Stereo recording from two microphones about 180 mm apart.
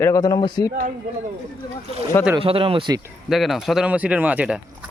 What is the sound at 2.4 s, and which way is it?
Speech, 30° right (ahead or behind).